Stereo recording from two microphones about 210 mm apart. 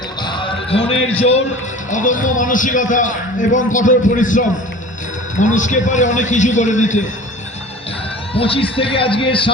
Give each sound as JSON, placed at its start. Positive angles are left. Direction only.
{"t": 0.2, "sound": "basketball bounce", "side_deg": 20}
{"t": 1.9, "sound": "a man's voice", "side_deg": 35}
{"t": 8.3, "sound": "a man's voice", "side_deg": 25}